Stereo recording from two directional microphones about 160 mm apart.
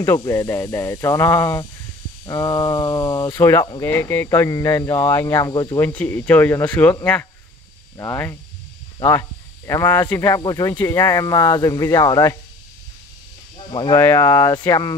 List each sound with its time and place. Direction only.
0.0 s speech: 15° left (ahead or behind)
5.9 s speech: 10° left (ahead or behind)
8.0 s speech: 15° left (ahead or behind)
9.7 s speech: 15° left (ahead or behind)
13.7 s speech: 30° left (ahead or behind)
13.9 s speech: 15° left (ahead or behind)